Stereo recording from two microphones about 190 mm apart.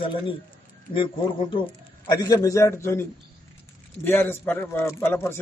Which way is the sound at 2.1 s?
20° left (ahead or behind).